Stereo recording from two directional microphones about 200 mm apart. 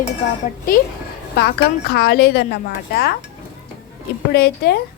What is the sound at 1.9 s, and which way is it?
Speech, 55° left (ahead or behind).